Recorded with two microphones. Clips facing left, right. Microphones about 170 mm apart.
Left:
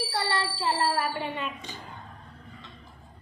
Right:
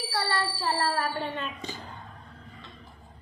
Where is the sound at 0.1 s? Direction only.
20° left (ahead or behind).